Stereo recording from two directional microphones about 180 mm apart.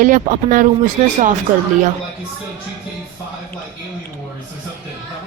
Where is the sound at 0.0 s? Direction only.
45° right (ahead or behind).